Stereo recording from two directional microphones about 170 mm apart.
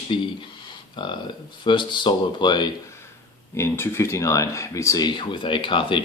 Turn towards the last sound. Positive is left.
turn(degrees=30)  # may be behind; listen again after turning